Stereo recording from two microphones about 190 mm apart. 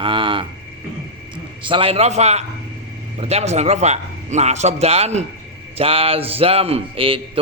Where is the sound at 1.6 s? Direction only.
25° right (ahead or behind).